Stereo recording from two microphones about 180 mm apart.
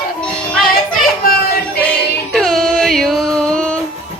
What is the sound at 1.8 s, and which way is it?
Female singing, 5° left (ahead or behind).